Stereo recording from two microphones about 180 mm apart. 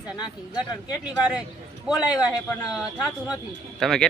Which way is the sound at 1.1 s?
5° right (ahead or behind).